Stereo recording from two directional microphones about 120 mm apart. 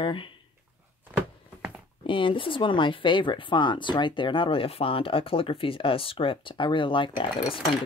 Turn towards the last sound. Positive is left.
turn(degrees=45)  # may be behind; listen again after turning